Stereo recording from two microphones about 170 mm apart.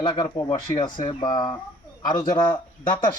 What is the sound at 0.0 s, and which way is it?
Speech, 25° left (ahead or behind).